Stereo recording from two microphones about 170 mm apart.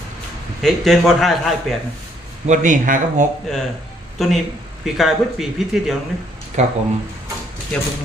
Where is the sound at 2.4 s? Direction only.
50° right (ahead or behind).